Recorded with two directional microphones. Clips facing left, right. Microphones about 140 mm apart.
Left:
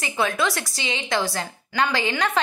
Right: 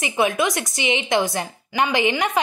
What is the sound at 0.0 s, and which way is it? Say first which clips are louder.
A woman's voice: right 3 dB; 20° right (ahead or behind).